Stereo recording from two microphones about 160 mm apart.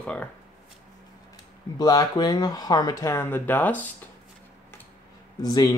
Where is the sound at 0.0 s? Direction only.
10° left (ahead or behind).